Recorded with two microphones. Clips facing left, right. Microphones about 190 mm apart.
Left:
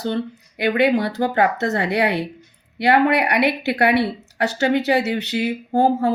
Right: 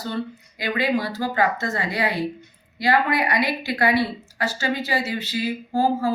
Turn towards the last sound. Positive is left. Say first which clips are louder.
# left 4 dB
turn(degrees=65)  # may be behind; listen again after turning